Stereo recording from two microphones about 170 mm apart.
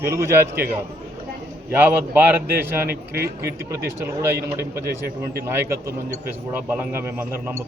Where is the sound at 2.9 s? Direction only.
65° right (ahead or behind).